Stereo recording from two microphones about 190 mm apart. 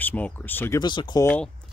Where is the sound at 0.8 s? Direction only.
25° left (ahead or behind).